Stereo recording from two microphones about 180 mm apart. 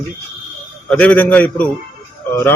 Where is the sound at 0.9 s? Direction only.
10° left (ahead or behind).